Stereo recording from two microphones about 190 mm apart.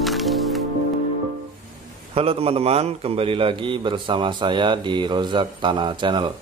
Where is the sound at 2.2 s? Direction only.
30° right (ahead or behind).